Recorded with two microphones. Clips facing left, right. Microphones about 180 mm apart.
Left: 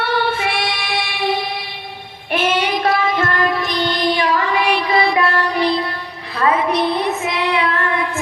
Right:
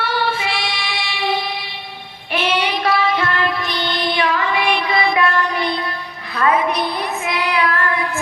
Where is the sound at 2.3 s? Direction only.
50° left (ahead or behind).